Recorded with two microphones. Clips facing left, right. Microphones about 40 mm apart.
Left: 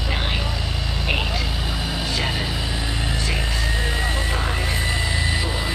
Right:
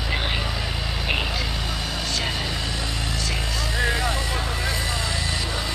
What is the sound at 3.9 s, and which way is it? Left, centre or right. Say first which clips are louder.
Vehicle: left 1 dB; left.